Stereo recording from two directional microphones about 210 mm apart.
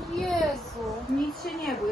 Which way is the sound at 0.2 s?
Centre (ahead or behind).